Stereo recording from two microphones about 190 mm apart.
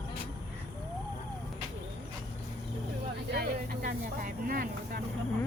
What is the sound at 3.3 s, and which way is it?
Speech, 50° right (ahead or behind).